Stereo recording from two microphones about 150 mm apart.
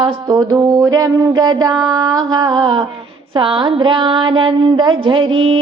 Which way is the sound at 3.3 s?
35° right (ahead or behind).